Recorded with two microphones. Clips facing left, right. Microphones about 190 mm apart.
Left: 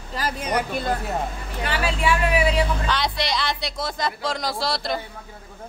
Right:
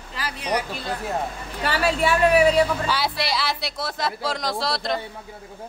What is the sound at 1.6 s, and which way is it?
A woman's voice, 40° right (ahead or behind).